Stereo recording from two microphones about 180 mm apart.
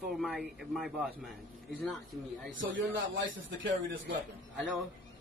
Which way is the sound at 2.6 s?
90° right.